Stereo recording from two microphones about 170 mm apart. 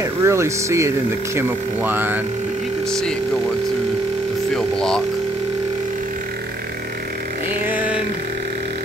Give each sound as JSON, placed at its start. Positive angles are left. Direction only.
{"t": 0.0, "sound": "speech", "side_deg": -15}
{"t": 2.9, "sound": "speech", "side_deg": 5}
{"t": 4.6, "sound": "speech", "side_deg": 5}
{"t": 7.6, "sound": "a sound", "side_deg": -10}